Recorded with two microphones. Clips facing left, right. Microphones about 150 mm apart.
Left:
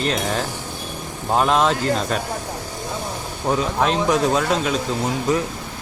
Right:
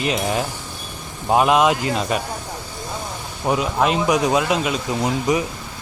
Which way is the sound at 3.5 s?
5° right (ahead or behind).